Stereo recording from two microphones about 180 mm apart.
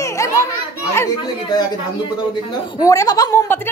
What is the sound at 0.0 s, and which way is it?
Children playing, 15° left (ahead or behind).